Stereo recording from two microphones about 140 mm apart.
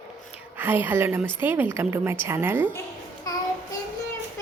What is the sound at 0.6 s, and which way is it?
A woman's voice, 15° right (ahead or behind).